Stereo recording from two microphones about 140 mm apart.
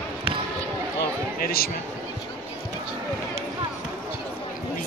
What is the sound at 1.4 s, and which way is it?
Speech, 90° left.